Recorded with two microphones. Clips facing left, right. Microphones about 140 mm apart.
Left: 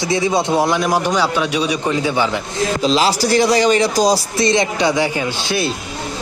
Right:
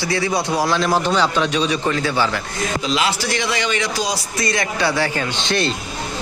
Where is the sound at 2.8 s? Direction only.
35° left (ahead or behind).